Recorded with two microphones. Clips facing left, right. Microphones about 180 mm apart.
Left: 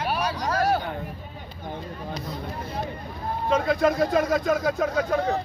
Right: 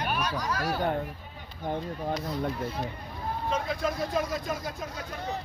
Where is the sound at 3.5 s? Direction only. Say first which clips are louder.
Left 10 dB; 75° left (ahead or behind).